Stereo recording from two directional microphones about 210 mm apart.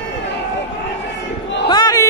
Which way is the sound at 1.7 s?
20° left (ahead or behind).